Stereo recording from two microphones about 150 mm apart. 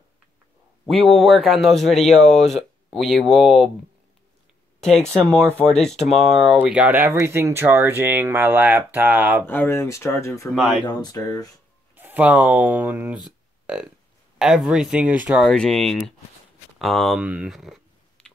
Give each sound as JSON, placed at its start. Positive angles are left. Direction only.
{"t": 1.0, "sound": "a man's voice", "side_deg": 0}
{"t": 4.7, "sound": "speech", "side_deg": 5}
{"t": 5.2, "sound": "speech", "side_deg": -15}
{"t": 5.7, "sound": "a man's voice", "side_deg": 5}
{"t": 9.5, "sound": "speech", "side_deg": 15}
{"t": 10.5, "sound": "a man's voice", "side_deg": 0}
{"t": 10.9, "sound": "speech", "side_deg": 25}
{"t": 11.9, "sound": "speech", "side_deg": -10}
{"t": 15.4, "sound": "a man's voice", "side_deg": 5}
{"t": 17.2, "sound": "a sound", "side_deg": -10}